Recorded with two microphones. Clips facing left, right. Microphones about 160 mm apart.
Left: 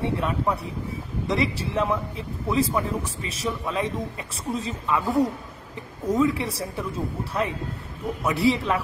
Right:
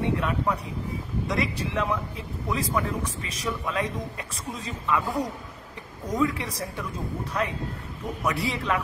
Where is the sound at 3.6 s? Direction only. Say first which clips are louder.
Left 2 dB; 30° left (ahead or behind).